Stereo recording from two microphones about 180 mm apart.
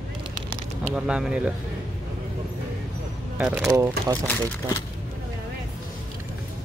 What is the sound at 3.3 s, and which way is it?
Speech, 5° right (ahead or behind).